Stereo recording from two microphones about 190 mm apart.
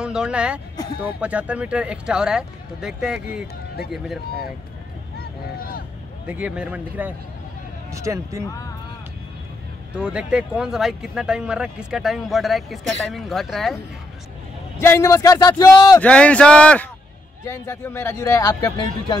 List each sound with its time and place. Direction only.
0.0 s speech: 5° right (ahead or behind)
5.2 s boat: 50° left (ahead or behind)
6.2 s speech: 5° right (ahead or behind)
9.9 s speech: 5° right (ahead or behind)
14.8 s a man's voice: 15° left (ahead or behind)
16.0 s a man's voice: 5° left (ahead or behind)